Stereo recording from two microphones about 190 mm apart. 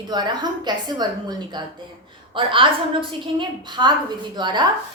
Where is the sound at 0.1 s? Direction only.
20° right (ahead or behind).